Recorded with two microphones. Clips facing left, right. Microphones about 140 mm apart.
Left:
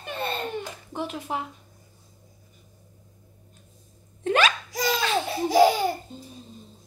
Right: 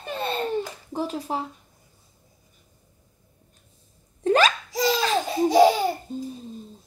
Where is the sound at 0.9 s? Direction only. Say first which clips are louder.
Right 3 dB; 35° right (ahead or behind).